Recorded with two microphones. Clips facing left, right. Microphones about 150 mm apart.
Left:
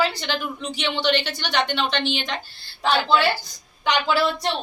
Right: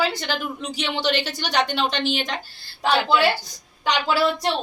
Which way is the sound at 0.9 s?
40° right (ahead or behind).